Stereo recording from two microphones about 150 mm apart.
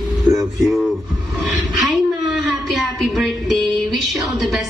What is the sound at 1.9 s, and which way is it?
Music, centre (ahead or behind).